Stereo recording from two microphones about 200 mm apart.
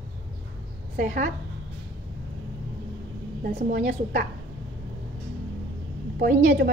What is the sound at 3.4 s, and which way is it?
Speech, 45° right (ahead or behind).